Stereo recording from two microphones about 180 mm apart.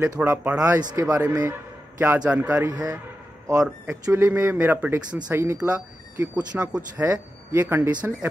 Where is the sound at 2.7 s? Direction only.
20° right (ahead or behind).